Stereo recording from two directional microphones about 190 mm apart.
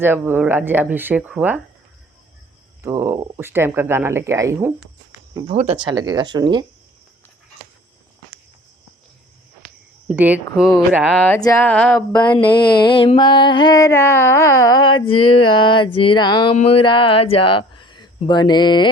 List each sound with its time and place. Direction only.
0.0 s speech: 10° right (ahead or behind)
2.8 s speech: 15° right (ahead or behind)
5.5 s speech: 30° right (ahead or behind)
10.1 s speech: 10° right (ahead or behind)
11.3 s music: 20° left (ahead or behind)
11.6 s speech: 5° left (ahead or behind)
12.2 s music: 25° left (ahead or behind)
16.6 s speech: 30° left (ahead or behind)